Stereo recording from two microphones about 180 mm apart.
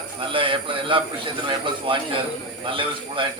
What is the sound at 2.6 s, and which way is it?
Speech, 30° right (ahead or behind).